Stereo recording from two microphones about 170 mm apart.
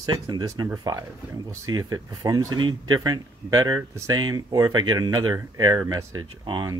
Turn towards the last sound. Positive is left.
turn(degrees=-25)  # may be behind; listen again after turning